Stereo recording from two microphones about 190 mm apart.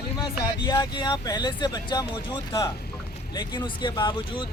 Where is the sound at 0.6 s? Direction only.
20° left (ahead or behind).